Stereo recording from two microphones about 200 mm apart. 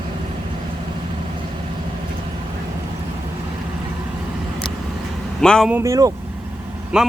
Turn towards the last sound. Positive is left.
turn(degrees=-5)  # may be behind; listen again after turning